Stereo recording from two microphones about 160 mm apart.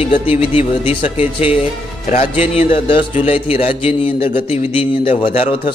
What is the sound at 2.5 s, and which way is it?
A man's voice, 35° left (ahead or behind).